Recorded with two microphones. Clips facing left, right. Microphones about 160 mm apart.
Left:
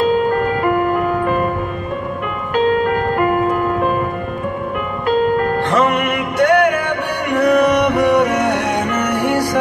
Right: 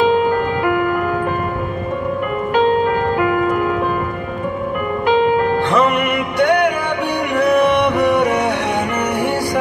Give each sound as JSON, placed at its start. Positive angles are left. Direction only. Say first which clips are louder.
{"t": 2.9, "sound": "music", "louder": "even", "side_deg": 45}
{"t": 5.7, "sound": "music", "louder": "left 1 dB", "side_deg": 0}
{"t": 7.4, "sound": "music", "louder": "left 1 dB", "side_deg": 45}